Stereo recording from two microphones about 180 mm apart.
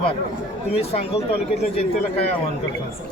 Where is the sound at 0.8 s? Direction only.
35° left (ahead or behind).